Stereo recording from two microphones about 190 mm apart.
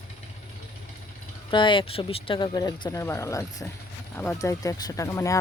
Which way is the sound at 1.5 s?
25° left (ahead or behind).